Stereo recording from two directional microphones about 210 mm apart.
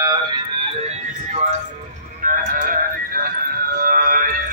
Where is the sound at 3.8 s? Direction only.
40° right (ahead or behind).